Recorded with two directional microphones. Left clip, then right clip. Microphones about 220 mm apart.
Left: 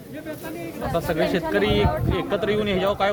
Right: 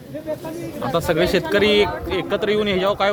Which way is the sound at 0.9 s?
50° right (ahead or behind).